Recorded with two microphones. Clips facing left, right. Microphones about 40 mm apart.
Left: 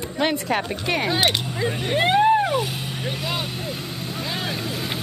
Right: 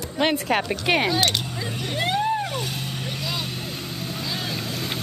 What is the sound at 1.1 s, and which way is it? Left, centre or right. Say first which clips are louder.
Speech: left 2 dB; centre.